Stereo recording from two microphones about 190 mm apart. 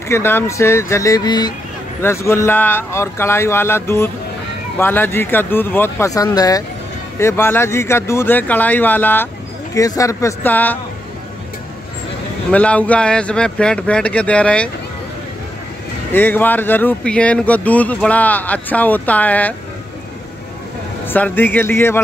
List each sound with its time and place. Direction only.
0.1 s speech: 10° left (ahead or behind)
12.4 s speech: 5° left (ahead or behind)
16.1 s speech: 10° left (ahead or behind)
21.1 s speech: 10° left (ahead or behind)